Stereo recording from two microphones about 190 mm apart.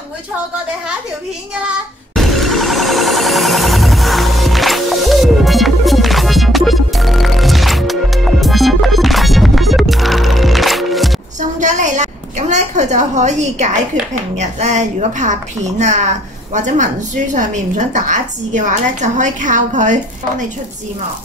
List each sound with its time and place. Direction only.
2.1 s music: centre (ahead or behind)
11.6 s a sound: 40° right (ahead or behind)
14.4 s a woman's voice: 40° right (ahead or behind)
16.5 s a woman's voice: 40° right (ahead or behind)